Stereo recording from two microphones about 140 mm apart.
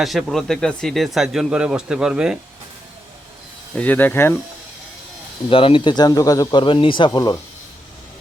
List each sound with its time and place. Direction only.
0.0 s speech: centre (ahead or behind)
3.8 s speech: 10° left (ahead or behind)
5.5 s a man's voice: 40° left (ahead or behind)